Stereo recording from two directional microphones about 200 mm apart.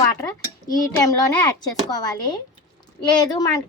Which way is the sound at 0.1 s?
15° left (ahead or behind).